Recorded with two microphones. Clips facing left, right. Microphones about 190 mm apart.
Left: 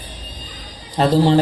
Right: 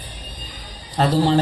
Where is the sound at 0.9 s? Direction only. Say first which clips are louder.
Left 3 dB; 20° left (ahead or behind).